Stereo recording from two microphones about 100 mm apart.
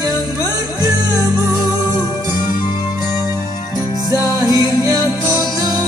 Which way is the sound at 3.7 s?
40° right (ahead or behind).